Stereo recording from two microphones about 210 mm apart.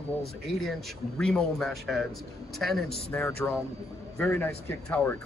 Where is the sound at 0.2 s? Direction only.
5° left (ahead or behind).